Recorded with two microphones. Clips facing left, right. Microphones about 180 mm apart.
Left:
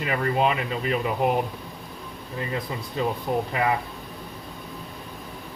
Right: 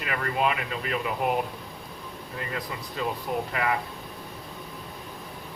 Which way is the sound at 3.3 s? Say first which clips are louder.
Left 4 dB; 25° left (ahead or behind).